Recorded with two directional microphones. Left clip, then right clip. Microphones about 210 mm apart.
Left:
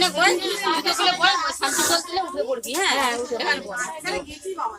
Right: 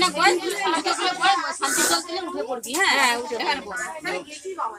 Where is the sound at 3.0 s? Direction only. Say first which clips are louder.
Right 2 dB; 10° right (ahead or behind).